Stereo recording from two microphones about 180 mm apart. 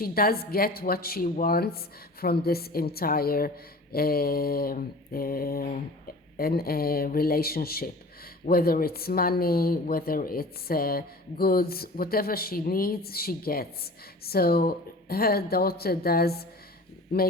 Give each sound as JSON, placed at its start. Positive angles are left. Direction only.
{"t": 0.0, "sound": "speech", "side_deg": 55}